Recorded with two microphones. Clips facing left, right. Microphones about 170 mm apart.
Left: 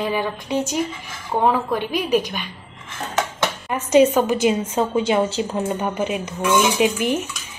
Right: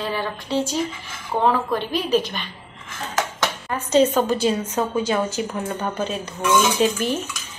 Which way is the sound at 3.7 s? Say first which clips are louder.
Left 3 dB; 15° left (ahead or behind).